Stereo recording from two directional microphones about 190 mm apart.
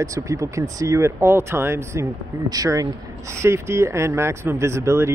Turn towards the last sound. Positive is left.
turn(degrees=-15)  # may be behind; listen again after turning